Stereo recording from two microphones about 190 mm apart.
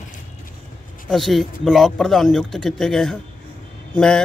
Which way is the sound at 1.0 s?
Centre (ahead or behind).